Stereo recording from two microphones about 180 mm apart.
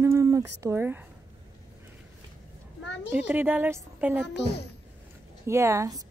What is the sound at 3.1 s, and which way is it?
A woman's voice, 10° right (ahead or behind).